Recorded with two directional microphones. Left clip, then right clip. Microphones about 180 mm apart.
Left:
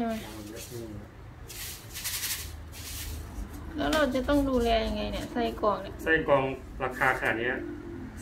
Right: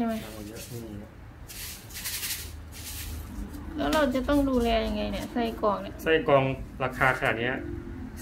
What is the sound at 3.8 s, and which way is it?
A woman's voice, 5° right (ahead or behind).